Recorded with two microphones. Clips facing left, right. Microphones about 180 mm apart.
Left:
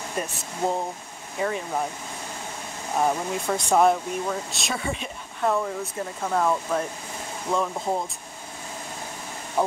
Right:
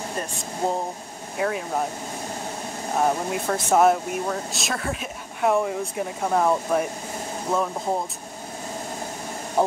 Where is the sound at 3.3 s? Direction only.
5° right (ahead or behind).